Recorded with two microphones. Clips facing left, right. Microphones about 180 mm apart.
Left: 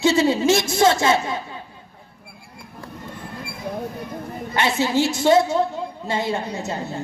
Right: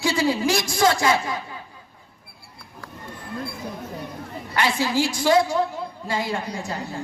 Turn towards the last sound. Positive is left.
turn(degrees=25)  # may be behind; listen again after turning